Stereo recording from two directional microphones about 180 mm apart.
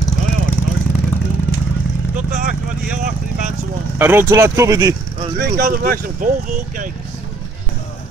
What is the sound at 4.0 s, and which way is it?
Speech, 10° right (ahead or behind).